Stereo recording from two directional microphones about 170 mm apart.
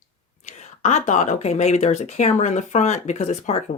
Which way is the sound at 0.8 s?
45° left (ahead or behind).